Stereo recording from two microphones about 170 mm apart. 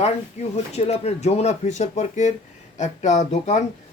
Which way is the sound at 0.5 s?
40° left (ahead or behind).